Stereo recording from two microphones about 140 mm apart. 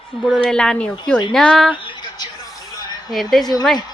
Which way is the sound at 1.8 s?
35° left (ahead or behind).